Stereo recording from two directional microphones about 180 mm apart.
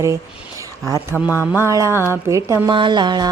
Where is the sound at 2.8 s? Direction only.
25° right (ahead or behind).